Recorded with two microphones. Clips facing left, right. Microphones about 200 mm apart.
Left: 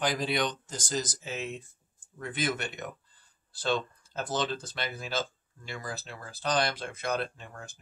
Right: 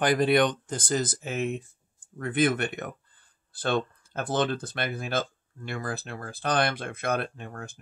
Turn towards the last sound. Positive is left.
turn(degrees=-55)  # may be behind; listen again after turning